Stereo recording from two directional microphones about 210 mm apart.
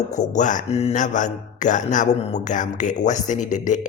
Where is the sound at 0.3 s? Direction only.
35° left (ahead or behind).